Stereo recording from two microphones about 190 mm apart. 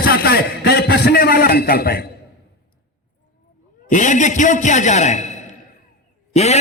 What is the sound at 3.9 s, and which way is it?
A man's voice, 40° left (ahead or behind).